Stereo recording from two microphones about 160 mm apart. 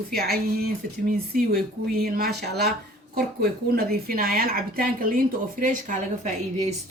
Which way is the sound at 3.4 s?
75° right (ahead or behind).